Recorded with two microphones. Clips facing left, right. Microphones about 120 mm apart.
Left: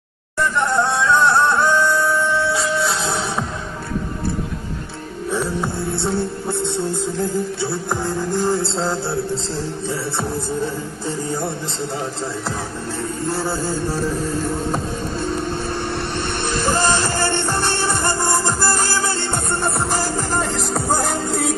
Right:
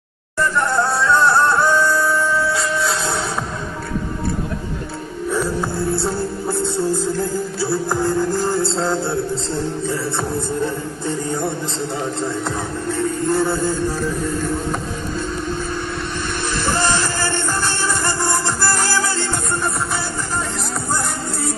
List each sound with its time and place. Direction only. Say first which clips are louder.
0.7 s music: left 1 dB; 5° right (ahead or behind)
2.3 s music: even; 25° left (ahead or behind)
5.4 s music: right 2 dB; centre (ahead or behind)
13.3 s music: right 5 dB; 5° left (ahead or behind)
16.8 s music: left 1 dB; 20° left (ahead or behind)
19.6 s music: left 2 dB; 40° left (ahead or behind)